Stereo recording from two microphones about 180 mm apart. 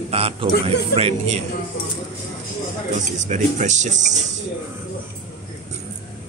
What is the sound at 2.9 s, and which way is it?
Speech, 40° right (ahead or behind).